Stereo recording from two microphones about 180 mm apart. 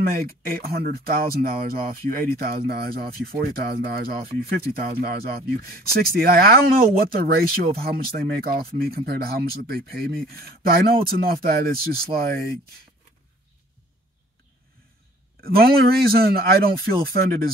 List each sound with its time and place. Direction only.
0.1 s speech: 55° right (ahead or behind)
15.4 s speech: 60° right (ahead or behind)